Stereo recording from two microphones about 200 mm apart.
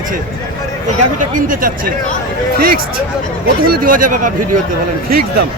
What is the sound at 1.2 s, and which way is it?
Speech, 40° right (ahead or behind).